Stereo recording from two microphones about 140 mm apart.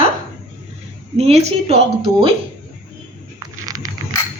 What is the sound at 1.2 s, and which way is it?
Speech, 50° right (ahead or behind).